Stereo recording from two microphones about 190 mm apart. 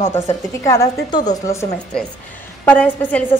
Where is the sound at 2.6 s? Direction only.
5° left (ahead or behind).